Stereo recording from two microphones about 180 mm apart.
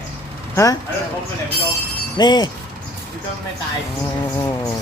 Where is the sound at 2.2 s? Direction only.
25° left (ahead or behind).